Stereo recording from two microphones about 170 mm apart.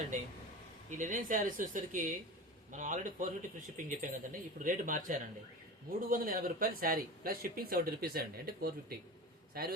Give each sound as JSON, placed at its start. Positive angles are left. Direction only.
{"t": 0.9, "sound": "a man's voice", "side_deg": -50}